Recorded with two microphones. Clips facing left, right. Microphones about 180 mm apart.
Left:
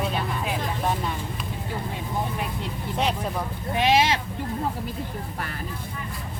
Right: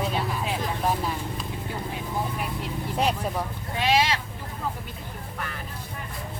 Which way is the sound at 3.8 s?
20° left (ahead or behind).